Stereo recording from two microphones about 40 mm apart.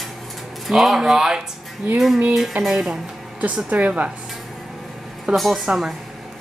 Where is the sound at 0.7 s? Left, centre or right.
Centre.